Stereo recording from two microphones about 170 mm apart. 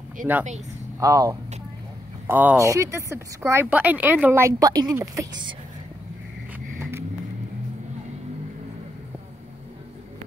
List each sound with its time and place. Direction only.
0.2 s speech: 50° right (ahead or behind)
0.9 s a woman's voice: 20° right (ahead or behind)
6.8 s vehicle: 15° right (ahead or behind)